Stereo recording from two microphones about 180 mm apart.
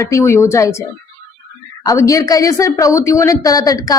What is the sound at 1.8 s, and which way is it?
Speech, 20° left (ahead or behind).